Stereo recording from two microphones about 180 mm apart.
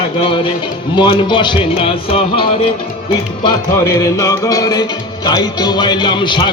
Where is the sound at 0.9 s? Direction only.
25° left (ahead or behind).